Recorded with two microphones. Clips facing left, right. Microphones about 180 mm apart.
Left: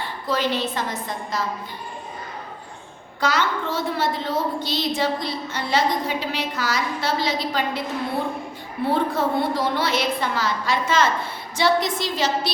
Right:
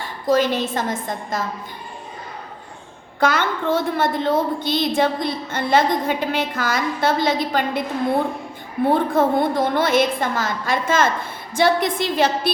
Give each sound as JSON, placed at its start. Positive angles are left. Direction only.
{"t": 0.3, "sound": "a woman's voice", "side_deg": -45}
{"t": 3.2, "sound": "a woman's voice", "side_deg": -55}
{"t": 8.9, "sound": "a woman's voice", "side_deg": -50}